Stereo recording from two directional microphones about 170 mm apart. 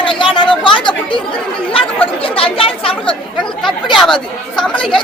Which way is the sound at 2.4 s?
35° left (ahead or behind).